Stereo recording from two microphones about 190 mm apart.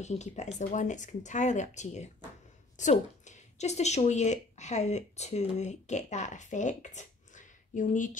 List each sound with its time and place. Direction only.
0.0 s speech: 35° left (ahead or behind)